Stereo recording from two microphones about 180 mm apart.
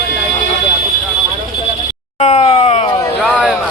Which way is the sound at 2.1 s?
35° left (ahead or behind).